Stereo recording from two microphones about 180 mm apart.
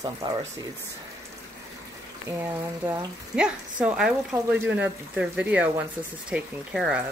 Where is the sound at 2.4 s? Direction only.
10° right (ahead or behind).